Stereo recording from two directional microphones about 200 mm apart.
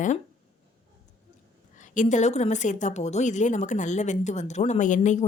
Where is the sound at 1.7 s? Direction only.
40° left (ahead or behind).